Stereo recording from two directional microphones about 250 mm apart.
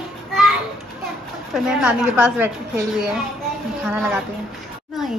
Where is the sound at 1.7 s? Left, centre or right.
Centre.